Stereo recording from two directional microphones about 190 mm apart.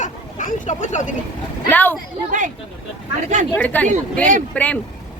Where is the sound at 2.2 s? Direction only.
45° right (ahead or behind).